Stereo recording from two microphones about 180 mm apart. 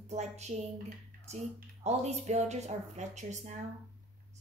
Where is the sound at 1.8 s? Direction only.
40° right (ahead or behind).